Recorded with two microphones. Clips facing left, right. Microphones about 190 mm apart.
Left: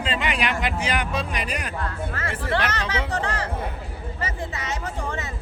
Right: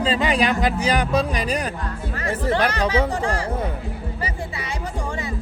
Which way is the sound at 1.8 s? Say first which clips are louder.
Right 2 dB; 15° right (ahead or behind).